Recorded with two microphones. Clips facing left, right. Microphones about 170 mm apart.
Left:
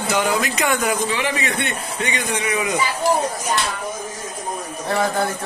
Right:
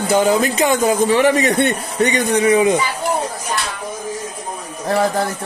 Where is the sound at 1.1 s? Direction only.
40° right (ahead or behind).